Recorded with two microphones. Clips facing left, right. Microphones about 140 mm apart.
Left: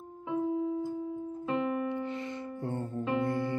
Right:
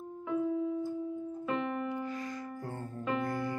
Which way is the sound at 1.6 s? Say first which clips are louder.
Left 4 dB; 15° left (ahead or behind).